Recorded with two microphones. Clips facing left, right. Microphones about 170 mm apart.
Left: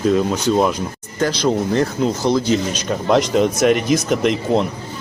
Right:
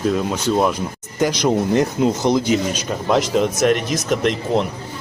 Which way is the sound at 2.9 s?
Centre (ahead or behind).